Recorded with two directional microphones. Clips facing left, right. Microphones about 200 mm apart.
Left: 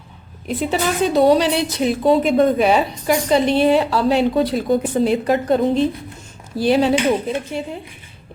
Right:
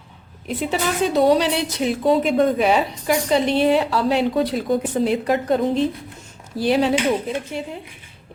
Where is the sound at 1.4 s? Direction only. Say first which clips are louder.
Left 3 dB; 35° left (ahead or behind).